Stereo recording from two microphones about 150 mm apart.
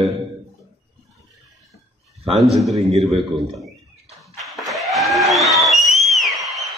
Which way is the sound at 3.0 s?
Centre (ahead or behind).